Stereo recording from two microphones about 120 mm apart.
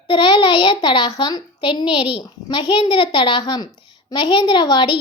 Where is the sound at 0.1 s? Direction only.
40° left (ahead or behind).